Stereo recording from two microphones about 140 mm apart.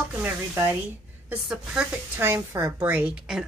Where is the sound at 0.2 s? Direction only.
15° right (ahead or behind).